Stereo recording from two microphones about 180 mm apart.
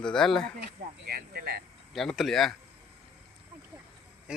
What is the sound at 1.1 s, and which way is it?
Insect, 55° right (ahead or behind).